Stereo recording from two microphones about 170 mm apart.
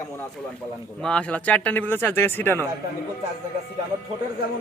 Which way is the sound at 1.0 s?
5° left (ahead or behind).